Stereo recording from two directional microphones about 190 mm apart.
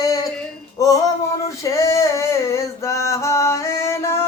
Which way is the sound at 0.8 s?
15° left (ahead or behind).